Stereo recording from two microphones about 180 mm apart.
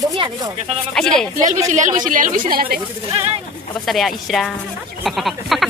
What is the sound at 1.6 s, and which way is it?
Speech, 40° right (ahead or behind).